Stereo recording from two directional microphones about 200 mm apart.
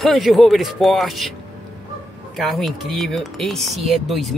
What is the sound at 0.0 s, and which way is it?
Speech, centre (ahead or behind).